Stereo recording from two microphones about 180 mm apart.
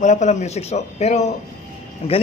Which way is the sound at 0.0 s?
40° left (ahead or behind).